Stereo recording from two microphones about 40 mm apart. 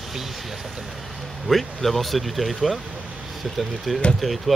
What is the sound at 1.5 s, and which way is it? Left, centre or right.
Speech, centre.